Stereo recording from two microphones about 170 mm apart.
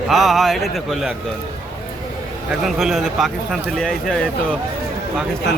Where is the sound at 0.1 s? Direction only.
Centre (ahead or behind).